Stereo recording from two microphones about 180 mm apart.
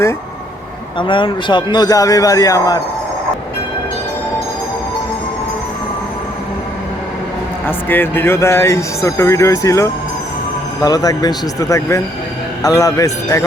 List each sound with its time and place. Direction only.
0.9 s a man's voice: 30° left (ahead or behind)
7.7 s a man's voice: 10° left (ahead or behind)